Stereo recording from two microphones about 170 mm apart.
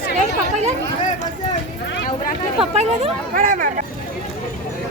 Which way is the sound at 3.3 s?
55° right (ahead or behind).